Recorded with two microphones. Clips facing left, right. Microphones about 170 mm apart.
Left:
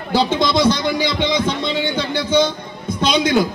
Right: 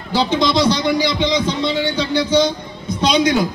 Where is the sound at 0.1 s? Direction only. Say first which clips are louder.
Even; 50° left (ahead or behind).